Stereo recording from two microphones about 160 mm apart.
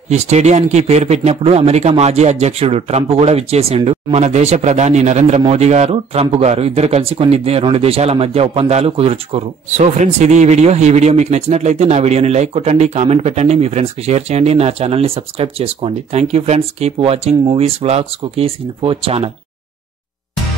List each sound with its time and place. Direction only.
0.1 s a man's voice: 45° right (ahead or behind)